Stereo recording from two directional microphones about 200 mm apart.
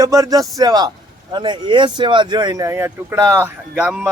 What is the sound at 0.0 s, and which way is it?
A man's voice, 15° right (ahead or behind).